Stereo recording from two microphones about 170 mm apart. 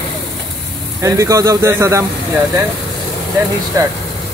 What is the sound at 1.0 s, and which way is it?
Speech, 15° right (ahead or behind).